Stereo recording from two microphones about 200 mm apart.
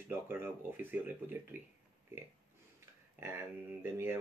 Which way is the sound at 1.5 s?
10° right (ahead or behind).